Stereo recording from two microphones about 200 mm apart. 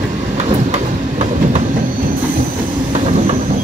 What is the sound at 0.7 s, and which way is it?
Train, 35° right (ahead or behind).